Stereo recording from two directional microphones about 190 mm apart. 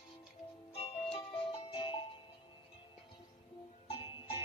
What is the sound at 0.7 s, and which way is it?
Music, 30° left (ahead or behind).